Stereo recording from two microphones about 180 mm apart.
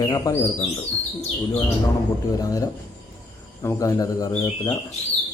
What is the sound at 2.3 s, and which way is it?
Speech, 20° left (ahead or behind).